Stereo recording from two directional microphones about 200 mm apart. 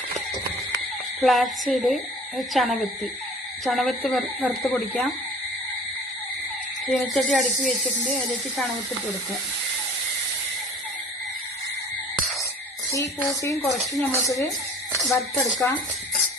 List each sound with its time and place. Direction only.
1.2 s a woman's voice: centre (ahead or behind)
6.8 s a woman's voice: centre (ahead or behind)
13.4 s speech: 15° left (ahead or behind)
13.7 s a woman's voice: centre (ahead or behind)
14.1 s speech: 15° left (ahead or behind)
15.0 s a woman's voice: centre (ahead or behind)